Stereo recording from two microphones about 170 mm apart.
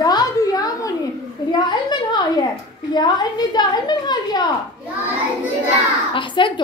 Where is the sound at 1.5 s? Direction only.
25° left (ahead or behind).